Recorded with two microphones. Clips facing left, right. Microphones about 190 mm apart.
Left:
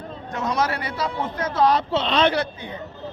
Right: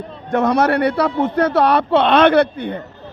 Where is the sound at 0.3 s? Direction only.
60° right (ahead or behind).